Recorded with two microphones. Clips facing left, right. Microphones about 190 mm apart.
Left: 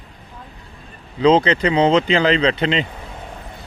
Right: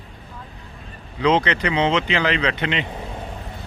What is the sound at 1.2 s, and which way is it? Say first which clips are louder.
Speech: left 5 dB; 30° left (ahead or behind).